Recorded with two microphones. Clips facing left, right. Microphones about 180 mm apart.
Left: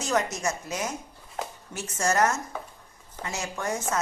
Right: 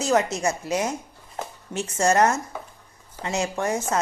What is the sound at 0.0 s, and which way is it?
Speech, 30° right (ahead or behind).